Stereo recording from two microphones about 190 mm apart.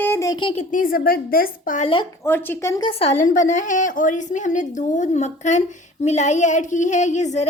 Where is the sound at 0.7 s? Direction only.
45° left (ahead or behind).